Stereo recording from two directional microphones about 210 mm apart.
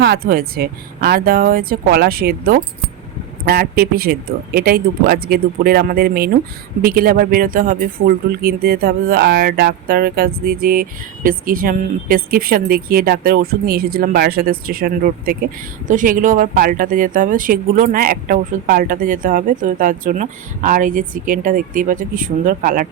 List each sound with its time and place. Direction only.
0.0 s speech: 45° right (ahead or behind)